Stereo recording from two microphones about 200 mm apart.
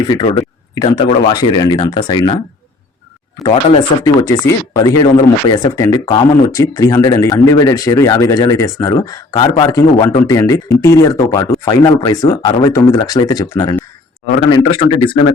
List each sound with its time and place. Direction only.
0.1 s speech: 25° left (ahead or behind)
3.4 s speech: 30° left (ahead or behind)
4.0 s speech: 15° left (ahead or behind)